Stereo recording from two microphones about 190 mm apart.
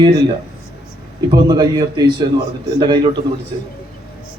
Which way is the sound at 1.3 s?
20° right (ahead or behind).